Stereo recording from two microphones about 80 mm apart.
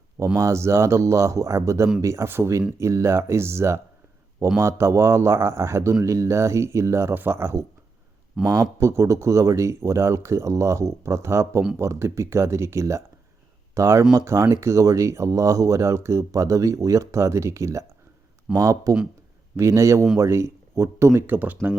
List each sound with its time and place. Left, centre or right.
0.3 s speech: right
8.4 s speech: centre
8.8 s speech: right
21.2 s speech: right